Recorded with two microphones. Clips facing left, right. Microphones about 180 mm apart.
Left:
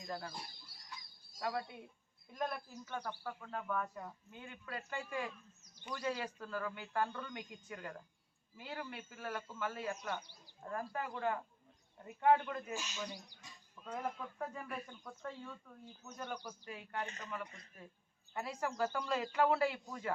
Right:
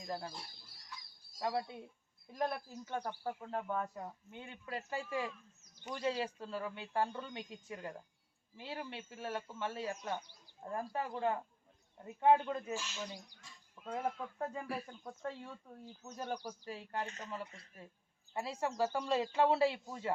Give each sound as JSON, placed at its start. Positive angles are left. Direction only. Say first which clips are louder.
{"t": 0.0, "sound": "speech", "louder": "right 2 dB", "side_deg": -25}
{"t": 1.4, "sound": "speech", "louder": "right 3 dB", "side_deg": -25}
{"t": 12.7, "sound": "speech", "louder": "right 2 dB", "side_deg": 15}
{"t": 13.8, "sound": "speech", "louder": "right 3 dB", "side_deg": -25}